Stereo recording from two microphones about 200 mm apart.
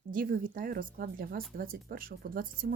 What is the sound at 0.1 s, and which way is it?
Speech, 45° right (ahead or behind).